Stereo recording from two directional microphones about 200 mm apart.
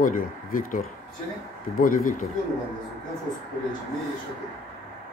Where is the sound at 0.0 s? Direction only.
45° left (ahead or behind).